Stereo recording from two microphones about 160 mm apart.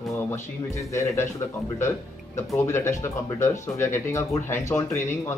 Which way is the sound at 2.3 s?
15° left (ahead or behind).